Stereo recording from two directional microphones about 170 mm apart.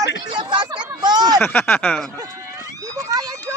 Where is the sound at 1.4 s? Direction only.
10° left (ahead or behind).